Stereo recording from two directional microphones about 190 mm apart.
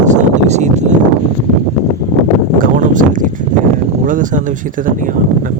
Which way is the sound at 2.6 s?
45° right (ahead or behind).